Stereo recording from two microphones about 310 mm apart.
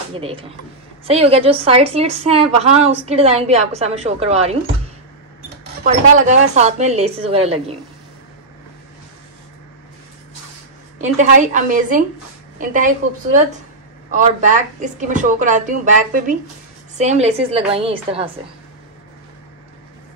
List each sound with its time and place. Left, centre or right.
0.1 s speech: centre
5.9 s speech: right
11.0 s a woman's voice: right
14.1 s speech: right